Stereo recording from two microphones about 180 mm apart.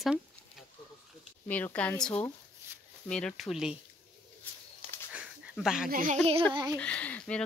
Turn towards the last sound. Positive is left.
turn(degrees=5)  # may be behind; listen again after turning